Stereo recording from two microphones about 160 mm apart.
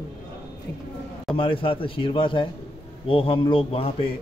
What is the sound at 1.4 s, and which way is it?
A man's voice, 35° left (ahead or behind).